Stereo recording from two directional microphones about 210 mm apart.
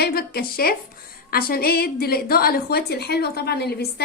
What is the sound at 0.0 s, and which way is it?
A woman's voice, 45° left (ahead or behind).